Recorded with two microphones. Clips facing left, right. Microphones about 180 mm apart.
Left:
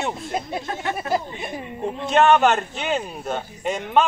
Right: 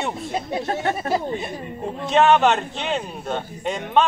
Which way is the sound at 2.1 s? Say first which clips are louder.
Even; centre (ahead or behind).